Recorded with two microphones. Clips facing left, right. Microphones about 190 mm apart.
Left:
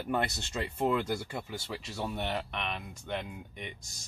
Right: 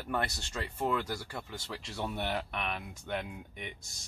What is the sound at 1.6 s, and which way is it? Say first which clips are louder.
Speech: left 1 dB; 5° left (ahead or behind).